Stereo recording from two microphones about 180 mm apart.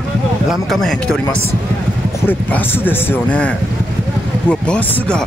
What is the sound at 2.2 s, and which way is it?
Speech, 10° left (ahead or behind).